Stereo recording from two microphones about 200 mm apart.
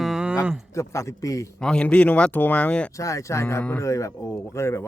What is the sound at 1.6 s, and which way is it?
Speech, 5° left (ahead or behind).